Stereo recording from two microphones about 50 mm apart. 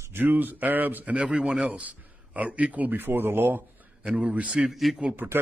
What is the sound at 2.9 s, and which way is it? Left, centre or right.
Speech, right.